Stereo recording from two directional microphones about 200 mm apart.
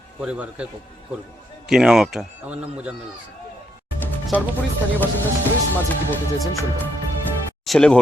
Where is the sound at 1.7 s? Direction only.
5° right (ahead or behind).